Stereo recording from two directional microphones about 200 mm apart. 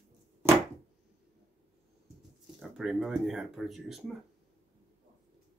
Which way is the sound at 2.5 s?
Centre (ahead or behind).